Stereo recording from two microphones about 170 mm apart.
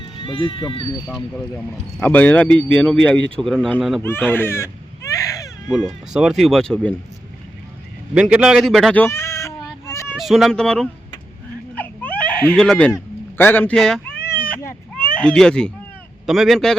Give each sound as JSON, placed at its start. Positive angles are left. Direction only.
{"t": 0.0, "sound": "speech", "side_deg": 30}
{"t": 2.0, "sound": "speech", "side_deg": 10}
{"t": 4.0, "sound": "baby cry", "side_deg": 10}
{"t": 5.6, "sound": "speech", "side_deg": 0}
{"t": 8.1, "sound": "a sound", "side_deg": -5}
{"t": 10.2, "sound": "speech", "side_deg": 0}
{"t": 11.7, "sound": "baby cry", "side_deg": 10}
{"t": 16.2, "sound": "speech", "side_deg": 0}